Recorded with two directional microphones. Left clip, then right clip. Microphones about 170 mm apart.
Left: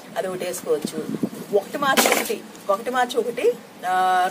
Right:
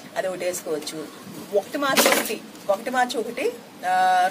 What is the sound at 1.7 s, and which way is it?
Speech, 10° left (ahead or behind).